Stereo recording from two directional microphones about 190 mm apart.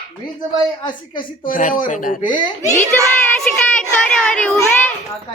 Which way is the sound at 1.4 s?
45° left (ahead or behind).